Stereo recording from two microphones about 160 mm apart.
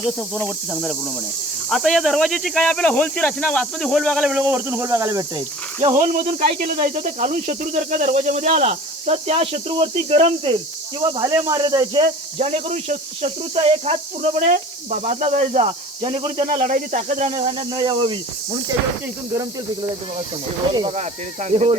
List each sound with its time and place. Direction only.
0.0 s speech: centre (ahead or behind); by 5.2 s 20° right (ahead or behind)
6.1 s speech: 60° right (ahead or behind); by 10.6 s 35° right (ahead or behind)
11.0 s speech: 20° right (ahead or behind)
12.4 s speech: 40° right (ahead or behind)
16.1 s speech: 35° right (ahead or behind)
16.5 s speech: 60° right (ahead or behind)
17.7 s speech: 30° right (ahead or behind)
21.5 s speech: 40° right (ahead or behind)